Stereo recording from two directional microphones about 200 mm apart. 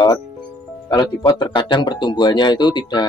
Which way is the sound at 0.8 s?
20° left (ahead or behind).